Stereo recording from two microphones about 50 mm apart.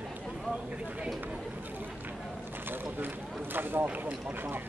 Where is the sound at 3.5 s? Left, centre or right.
Right.